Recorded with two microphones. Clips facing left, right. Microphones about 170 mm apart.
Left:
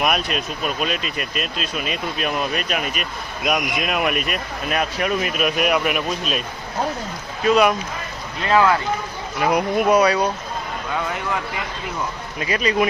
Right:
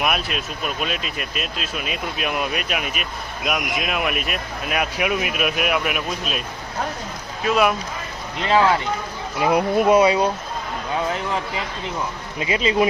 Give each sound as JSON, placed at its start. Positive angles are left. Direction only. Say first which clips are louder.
{"t": 0.0, "sound": "speech", "louder": "left 2 dB", "side_deg": 0}
{"t": 7.4, "sound": "speech", "louder": "left 3 dB", "side_deg": 0}
{"t": 8.4, "sound": "speech", "louder": "left 1 dB", "side_deg": -25}
{"t": 12.4, "sound": "speech", "louder": "right 1 dB", "side_deg": -20}